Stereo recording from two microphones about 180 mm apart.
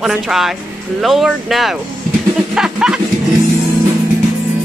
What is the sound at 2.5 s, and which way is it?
Music, 5° right (ahead or behind).